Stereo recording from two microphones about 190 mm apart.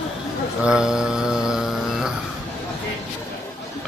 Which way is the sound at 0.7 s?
5° right (ahead or behind).